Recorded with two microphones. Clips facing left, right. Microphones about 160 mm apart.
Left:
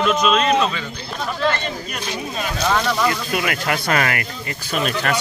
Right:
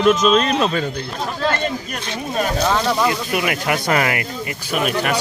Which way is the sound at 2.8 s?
20° right (ahead or behind).